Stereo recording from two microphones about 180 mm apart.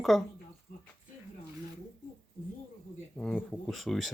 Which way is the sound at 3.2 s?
Centre (ahead or behind).